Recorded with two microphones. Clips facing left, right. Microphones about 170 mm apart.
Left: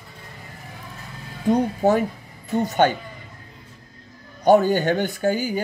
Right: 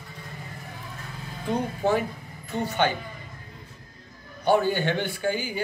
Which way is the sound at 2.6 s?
45° left (ahead or behind).